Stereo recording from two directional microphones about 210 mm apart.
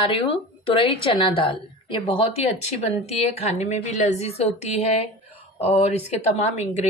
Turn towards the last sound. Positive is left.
turn(degrees=30)  # may be behind; listen again after turning